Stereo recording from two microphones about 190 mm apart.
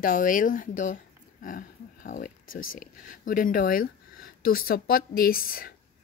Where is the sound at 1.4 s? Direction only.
45° left (ahead or behind).